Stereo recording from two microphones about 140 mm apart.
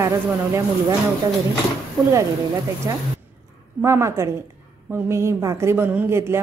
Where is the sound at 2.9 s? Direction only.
25° right (ahead or behind).